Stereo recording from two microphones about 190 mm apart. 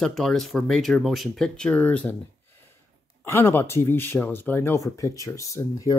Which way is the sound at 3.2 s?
15° left (ahead or behind).